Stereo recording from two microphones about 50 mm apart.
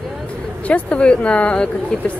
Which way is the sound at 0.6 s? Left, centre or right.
Left.